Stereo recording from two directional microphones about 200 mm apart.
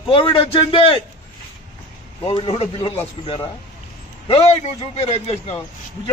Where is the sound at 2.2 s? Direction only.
25° left (ahead or behind).